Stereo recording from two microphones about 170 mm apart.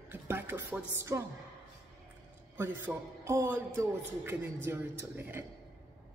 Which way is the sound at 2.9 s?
10° right (ahead or behind).